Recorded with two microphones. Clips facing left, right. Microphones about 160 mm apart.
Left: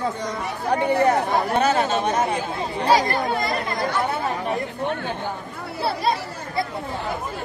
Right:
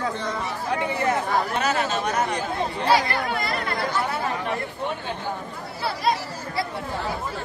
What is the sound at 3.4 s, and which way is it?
Speech, 20° left (ahead or behind).